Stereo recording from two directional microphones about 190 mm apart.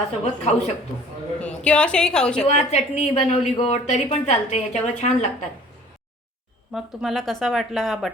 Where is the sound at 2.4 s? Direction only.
35° left (ahead or behind).